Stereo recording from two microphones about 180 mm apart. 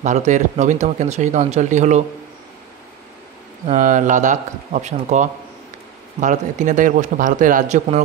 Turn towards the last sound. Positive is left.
turn(degrees=-40)  # may be behind; listen again after turning